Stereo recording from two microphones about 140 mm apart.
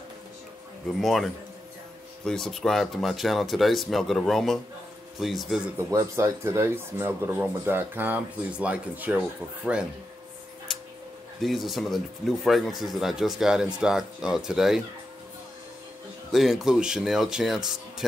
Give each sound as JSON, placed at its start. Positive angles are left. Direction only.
{"t": 1.0, "sound": "speech", "side_deg": 0}
{"t": 5.8, "sound": "speech", "side_deg": -20}
{"t": 10.7, "sound": "a sound", "side_deg": 0}
{"t": 11.4, "sound": "speech", "side_deg": 0}
{"t": 16.3, "sound": "speech", "side_deg": 0}